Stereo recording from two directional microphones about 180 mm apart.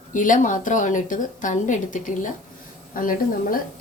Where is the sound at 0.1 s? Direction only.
45° left (ahead or behind).